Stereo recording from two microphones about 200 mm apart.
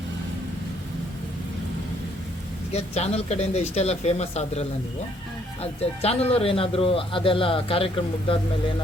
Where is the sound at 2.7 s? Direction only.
30° left (ahead or behind).